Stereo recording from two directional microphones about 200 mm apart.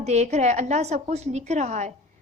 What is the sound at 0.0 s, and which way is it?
A woman's voice, 35° right (ahead or behind).